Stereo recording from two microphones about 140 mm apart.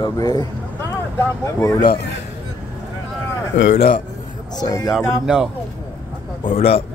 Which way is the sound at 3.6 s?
65° left (ahead or behind).